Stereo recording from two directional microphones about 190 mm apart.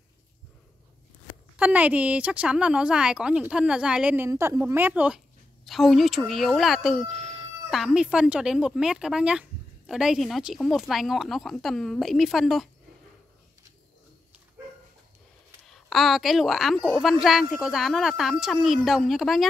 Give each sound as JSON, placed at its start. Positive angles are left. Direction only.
{"t": 1.6, "sound": "speech", "side_deg": -5}
{"t": 15.6, "sound": "speech", "side_deg": 0}